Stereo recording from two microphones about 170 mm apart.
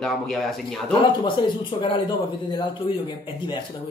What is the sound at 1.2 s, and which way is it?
Speech, 30° left (ahead or behind).